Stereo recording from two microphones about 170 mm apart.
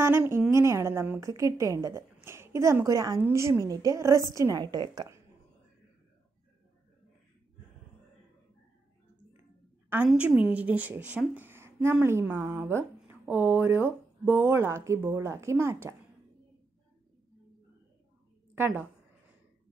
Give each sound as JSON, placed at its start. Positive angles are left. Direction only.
{"t": 0.0, "sound": "a woman's voice", "side_deg": -15}
{"t": 10.0, "sound": "speech", "side_deg": -5}